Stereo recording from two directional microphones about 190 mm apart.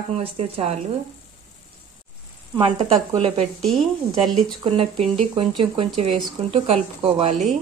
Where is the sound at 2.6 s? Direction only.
30° right (ahead or behind).